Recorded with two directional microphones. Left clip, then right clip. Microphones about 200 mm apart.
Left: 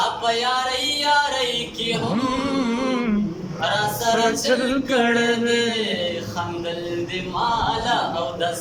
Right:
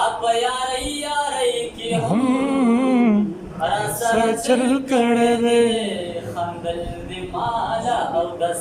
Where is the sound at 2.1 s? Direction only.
20° right (ahead or behind).